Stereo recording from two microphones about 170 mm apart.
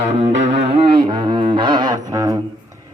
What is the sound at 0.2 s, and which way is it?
Music, 40° right (ahead or behind).